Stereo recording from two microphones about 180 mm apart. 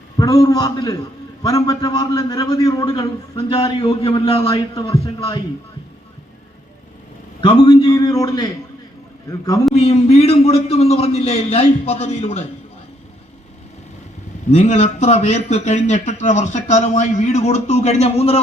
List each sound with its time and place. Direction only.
0.2 s a man's voice: 20° left (ahead or behind)
4.4 s a man's voice: 20° left (ahead or behind)
7.4 s a man's voice: 25° left (ahead or behind)
9.7 s a man's voice: 35° left (ahead or behind)
14.5 s a man's voice: 40° left (ahead or behind)